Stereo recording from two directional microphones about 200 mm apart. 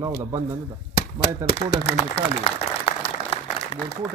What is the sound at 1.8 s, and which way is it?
Applause, 30° left (ahead or behind).